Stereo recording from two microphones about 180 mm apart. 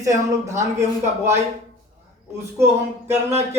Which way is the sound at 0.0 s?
15° right (ahead or behind).